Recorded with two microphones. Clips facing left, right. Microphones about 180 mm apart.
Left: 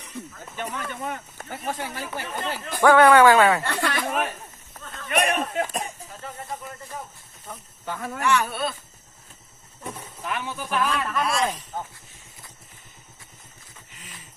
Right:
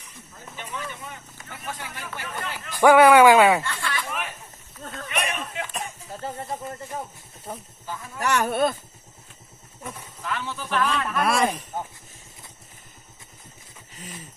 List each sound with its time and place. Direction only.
0.6 s speech: 55° left (ahead or behind)
1.5 s speech: 45° left (ahead or behind)
2.8 s speech: 10° right (ahead or behind)
3.8 s a sound: 40° left (ahead or behind)
6.2 s speech: 30° right (ahead or behind)
7.8 s speech: 65° left (ahead or behind)
8.2 s speech: 45° right (ahead or behind)
10.2 s a man's voice: 15° left (ahead or behind)
11.1 s speech: 60° right (ahead or behind)
13.9 s speech: 45° right (ahead or behind)